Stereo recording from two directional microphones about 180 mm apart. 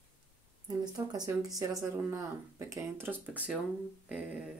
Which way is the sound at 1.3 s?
20° right (ahead or behind).